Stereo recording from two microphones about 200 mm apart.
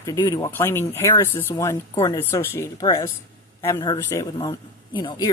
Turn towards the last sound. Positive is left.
turn(degrees=20)  # may be behind; listen again after turning